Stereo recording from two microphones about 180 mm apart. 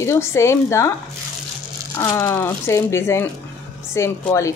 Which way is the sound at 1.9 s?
15° left (ahead or behind).